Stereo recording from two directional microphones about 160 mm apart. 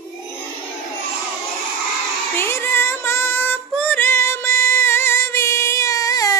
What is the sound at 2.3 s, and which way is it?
Music, 15° left (ahead or behind).